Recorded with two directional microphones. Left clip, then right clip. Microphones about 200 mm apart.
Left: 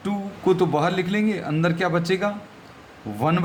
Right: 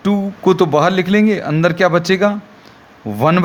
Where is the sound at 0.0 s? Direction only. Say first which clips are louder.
Right 9 dB; 40° right (ahead or behind).